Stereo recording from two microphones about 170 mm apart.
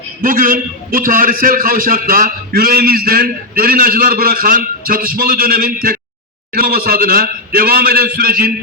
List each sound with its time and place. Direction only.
0.2 s a man's voice: 55° right (ahead or behind)